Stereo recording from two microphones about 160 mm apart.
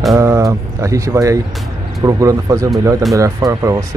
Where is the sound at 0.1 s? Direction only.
20° right (ahead or behind).